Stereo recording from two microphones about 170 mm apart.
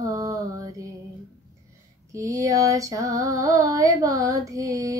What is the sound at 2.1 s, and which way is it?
Music, 20° right (ahead or behind).